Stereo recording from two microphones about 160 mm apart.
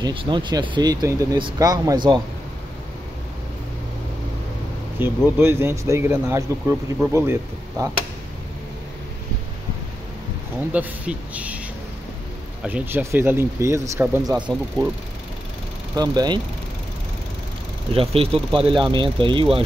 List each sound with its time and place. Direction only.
0.0 s speech: 30° right (ahead or behind)
4.9 s speech: 15° right (ahead or behind)
10.7 s speech: 10° right (ahead or behind)
12.6 s speech: 10° right (ahead or behind)
16.0 s speech: 25° right (ahead or behind)
17.9 s speech: 35° right (ahead or behind)